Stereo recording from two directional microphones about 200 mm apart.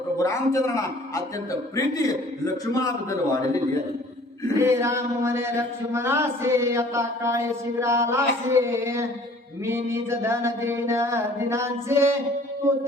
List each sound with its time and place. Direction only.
0.2 s a man's voice: 15° left (ahead or behind)
4.6 s speech: 10° right (ahead or behind)